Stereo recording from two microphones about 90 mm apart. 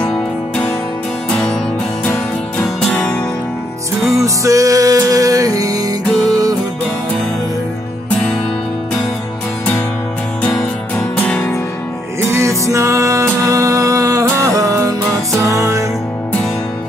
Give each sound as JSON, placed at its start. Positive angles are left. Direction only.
{"t": 1.3, "sound": "music", "side_deg": 5}
{"t": 2.9, "sound": "music", "side_deg": 15}
{"t": 4.2, "sound": "music", "side_deg": -35}
{"t": 10.4, "sound": "music", "side_deg": 5}
{"t": 11.1, "sound": "music", "side_deg": 15}
{"t": 12.2, "sound": "music", "side_deg": -30}